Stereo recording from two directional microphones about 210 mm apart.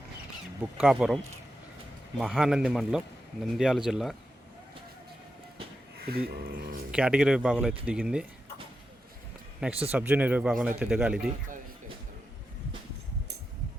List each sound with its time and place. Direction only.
0.8 s speech: 5° right (ahead or behind)
6.1 s speech: 45° right (ahead or behind)
6.9 s speech: 5° right (ahead or behind)
9.8 s speech: 5° right (ahead or behind)